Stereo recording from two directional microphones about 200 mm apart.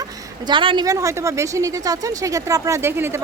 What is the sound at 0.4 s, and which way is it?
A woman's voice, 25° right (ahead or behind).